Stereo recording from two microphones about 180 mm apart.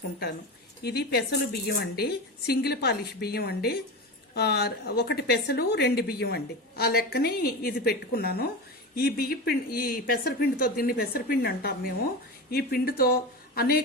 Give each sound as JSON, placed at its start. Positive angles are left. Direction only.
{"t": 0.8, "sound": "a woman's voice", "side_deg": 65}